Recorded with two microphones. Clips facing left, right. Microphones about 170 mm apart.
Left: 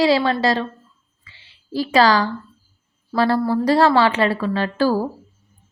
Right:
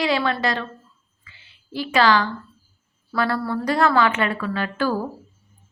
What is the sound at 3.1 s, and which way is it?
A woman's voice, 30° left (ahead or behind).